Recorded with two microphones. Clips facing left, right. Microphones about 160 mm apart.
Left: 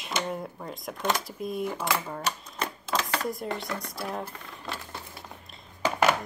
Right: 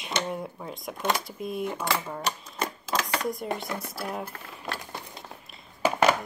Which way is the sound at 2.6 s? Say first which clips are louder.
Right 1 dB; 5° right (ahead or behind).